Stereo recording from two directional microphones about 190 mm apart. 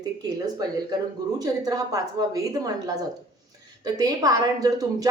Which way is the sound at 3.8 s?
20° right (ahead or behind).